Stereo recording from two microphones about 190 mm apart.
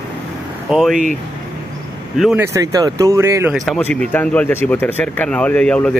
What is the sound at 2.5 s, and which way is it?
Speech, 15° right (ahead or behind).